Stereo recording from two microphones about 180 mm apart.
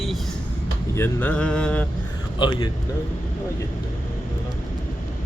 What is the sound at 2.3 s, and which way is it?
Speech, 25° left (ahead or behind).